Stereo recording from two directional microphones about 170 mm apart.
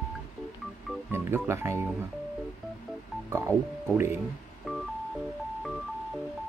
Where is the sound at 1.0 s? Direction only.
15° right (ahead or behind).